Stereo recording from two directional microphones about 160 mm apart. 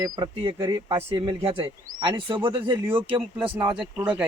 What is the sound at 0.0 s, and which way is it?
Speech, 30° right (ahead or behind).